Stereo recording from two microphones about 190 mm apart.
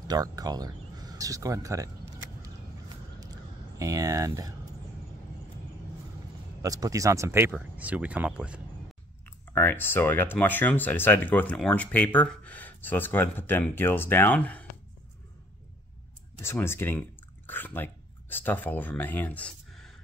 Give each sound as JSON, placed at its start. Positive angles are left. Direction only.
{"t": 0.1, "sound": "speech", "side_deg": -20}
{"t": 3.2, "sound": "a sound", "side_deg": -20}
{"t": 6.6, "sound": "speech", "side_deg": -20}
{"t": 9.5, "sound": "speech", "side_deg": 10}
{"t": 16.4, "sound": "speech", "side_deg": 10}